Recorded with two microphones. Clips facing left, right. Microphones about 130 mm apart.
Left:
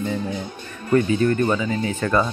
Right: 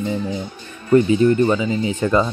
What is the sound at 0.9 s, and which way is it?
Speech, 20° right (ahead or behind).